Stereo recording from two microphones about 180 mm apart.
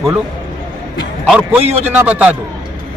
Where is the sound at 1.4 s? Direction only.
10° right (ahead or behind).